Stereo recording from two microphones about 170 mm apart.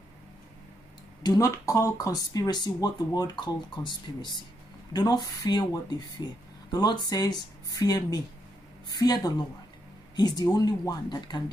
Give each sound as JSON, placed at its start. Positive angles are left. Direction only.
{"t": 1.2, "sound": "speech", "side_deg": 20}